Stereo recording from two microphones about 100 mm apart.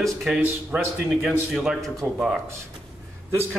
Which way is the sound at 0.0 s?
Centre (ahead or behind).